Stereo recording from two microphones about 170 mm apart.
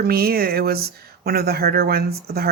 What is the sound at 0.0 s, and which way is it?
Speech, 65° right (ahead or behind).